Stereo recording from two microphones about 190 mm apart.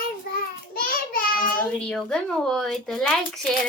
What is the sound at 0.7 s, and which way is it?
Child singing, 50° left (ahead or behind).